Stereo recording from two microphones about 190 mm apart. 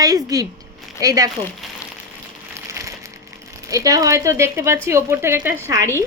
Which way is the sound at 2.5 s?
15° right (ahead or behind).